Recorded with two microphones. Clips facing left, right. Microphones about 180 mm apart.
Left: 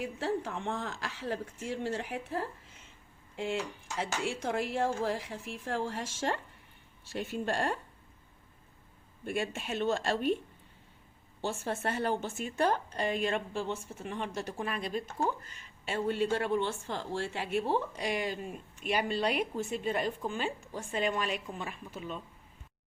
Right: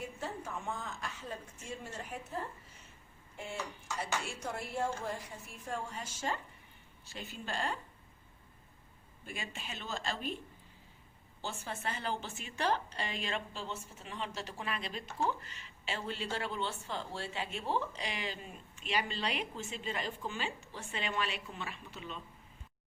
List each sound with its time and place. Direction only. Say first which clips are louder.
0.0 s speech: left 8 dB; 90° left
7.1 s a woman's voice: left 9 dB; 55° left (ahead or behind)
9.2 s a woman's voice: left 10 dB; 55° left (ahead or behind)
11.4 s a woman's voice: left 7 dB; 50° left (ahead or behind)